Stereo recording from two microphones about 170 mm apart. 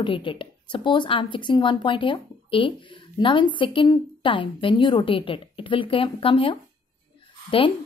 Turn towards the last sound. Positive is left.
turn(degrees=30)  # may be behind; listen again after turning